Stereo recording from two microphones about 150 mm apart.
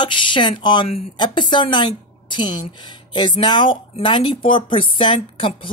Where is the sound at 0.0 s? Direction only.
30° left (ahead or behind).